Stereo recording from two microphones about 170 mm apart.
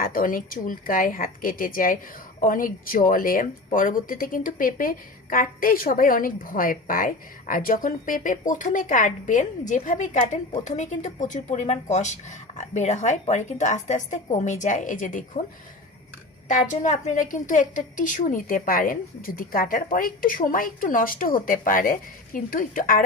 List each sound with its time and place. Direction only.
0.0 s a woman's voice: 55° left (ahead or behind)
16.5 s speech: 50° left (ahead or behind)